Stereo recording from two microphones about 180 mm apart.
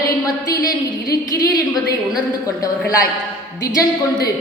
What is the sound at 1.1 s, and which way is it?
Speech, 20° left (ahead or behind).